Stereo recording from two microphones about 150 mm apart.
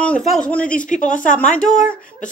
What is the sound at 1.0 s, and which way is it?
Speech, 60° left (ahead or behind).